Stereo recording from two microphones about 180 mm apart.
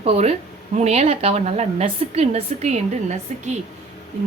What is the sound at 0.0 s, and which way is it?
Speech, 35° right (ahead or behind).